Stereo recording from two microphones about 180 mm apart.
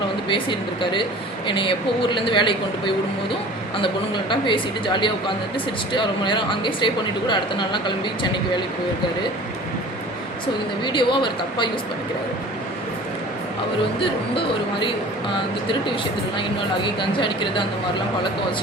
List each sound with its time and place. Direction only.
0.3 s speech: 25° left (ahead or behind)
10.8 s speech: 25° left (ahead or behind)
14.0 s speech: 30° left (ahead or behind)
16.4 s speech: 25° left (ahead or behind)